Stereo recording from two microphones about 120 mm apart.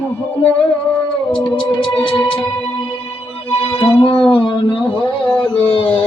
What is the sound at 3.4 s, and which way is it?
Music, 45° left (ahead or behind).